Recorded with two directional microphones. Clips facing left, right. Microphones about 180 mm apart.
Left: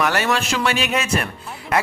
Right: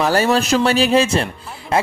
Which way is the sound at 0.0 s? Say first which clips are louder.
Right 4 dB; 35° right (ahead or behind).